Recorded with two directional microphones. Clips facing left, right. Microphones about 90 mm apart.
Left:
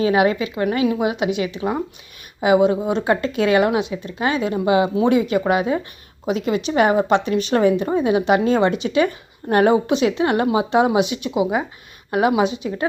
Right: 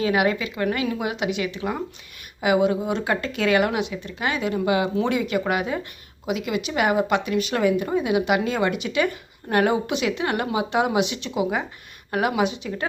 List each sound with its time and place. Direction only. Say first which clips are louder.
0.0 s a woman's voice: left 4 dB; 30° left (ahead or behind)